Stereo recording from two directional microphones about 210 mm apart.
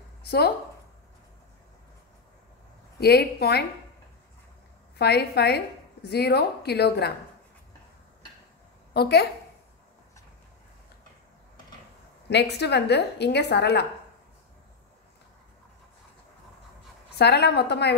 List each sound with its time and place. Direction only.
0.2 s a sound: 50° left (ahead or behind)
3.0 s a woman's voice: 50° left (ahead or behind)
4.9 s a woman's voice: 50° left (ahead or behind)
8.9 s a woman's voice: 50° left (ahead or behind)
12.3 s a woman's voice: 55° left (ahead or behind)
17.2 s a woman's voice: 50° left (ahead or behind)